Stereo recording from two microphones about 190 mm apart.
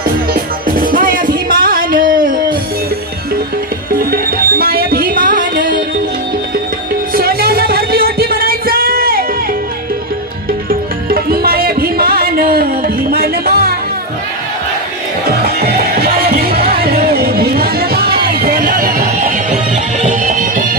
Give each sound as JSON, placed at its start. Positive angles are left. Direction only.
{"t": 0.3, "sound": "music", "side_deg": -50}
{"t": 3.9, "sound": "music", "side_deg": -50}
{"t": 7.1, "sound": "music", "side_deg": -50}
{"t": 10.7, "sound": "music", "side_deg": -50}
{"t": 15.4, "sound": "music", "side_deg": -55}